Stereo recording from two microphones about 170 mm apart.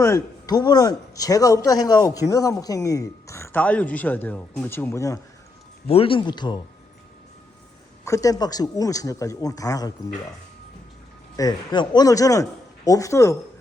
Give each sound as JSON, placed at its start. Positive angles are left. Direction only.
{"t": 0.0, "sound": "speech", "side_deg": 20}
{"t": 5.9, "sound": "speech", "side_deg": 35}
{"t": 8.0, "sound": "speech", "side_deg": 20}
{"t": 11.3, "sound": "speech", "side_deg": 25}